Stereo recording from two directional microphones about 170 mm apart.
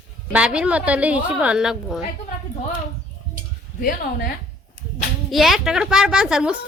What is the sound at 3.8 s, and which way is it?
Speech, 60° left (ahead or behind).